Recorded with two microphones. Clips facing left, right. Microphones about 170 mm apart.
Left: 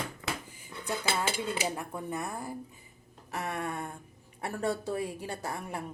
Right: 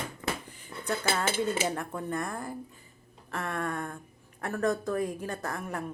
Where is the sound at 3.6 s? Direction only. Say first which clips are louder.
Right 2 dB; 10° left (ahead or behind).